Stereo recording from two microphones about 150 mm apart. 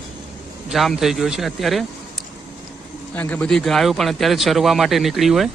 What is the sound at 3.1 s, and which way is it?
Speech, 10° left (ahead or behind).